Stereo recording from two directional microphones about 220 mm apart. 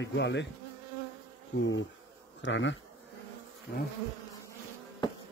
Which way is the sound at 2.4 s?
55° left (ahead or behind).